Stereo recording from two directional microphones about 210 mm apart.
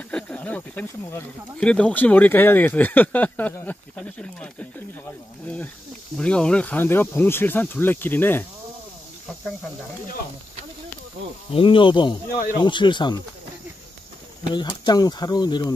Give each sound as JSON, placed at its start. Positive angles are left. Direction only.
{"t": 0.1, "sound": "speech", "side_deg": 5}
{"t": 6.1, "sound": "speech", "side_deg": 5}
{"t": 11.5, "sound": "speech", "side_deg": 25}
{"t": 14.5, "sound": "speech", "side_deg": 20}